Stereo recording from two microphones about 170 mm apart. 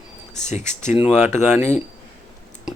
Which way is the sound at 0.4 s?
40° left (ahead or behind).